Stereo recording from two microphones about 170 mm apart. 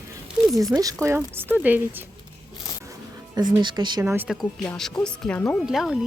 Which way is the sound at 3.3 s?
25° right (ahead or behind).